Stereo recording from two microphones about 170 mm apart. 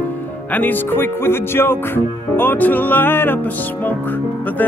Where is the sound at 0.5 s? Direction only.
10° left (ahead or behind).